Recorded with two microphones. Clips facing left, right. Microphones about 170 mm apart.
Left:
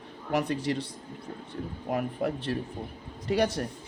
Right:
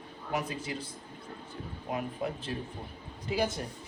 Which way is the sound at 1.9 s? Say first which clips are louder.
Left 5 dB; 60° left (ahead or behind).